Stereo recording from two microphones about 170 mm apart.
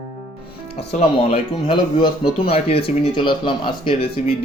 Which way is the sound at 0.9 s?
45° left (ahead or behind).